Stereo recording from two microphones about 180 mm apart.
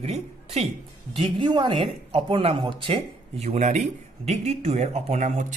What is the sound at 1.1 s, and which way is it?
Speech, 25° right (ahead or behind).